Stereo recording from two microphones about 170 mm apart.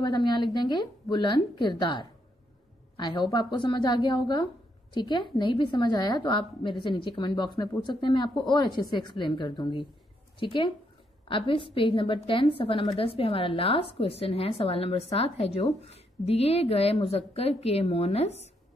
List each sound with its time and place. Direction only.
0.0 s a woman's voice: 25° left (ahead or behind)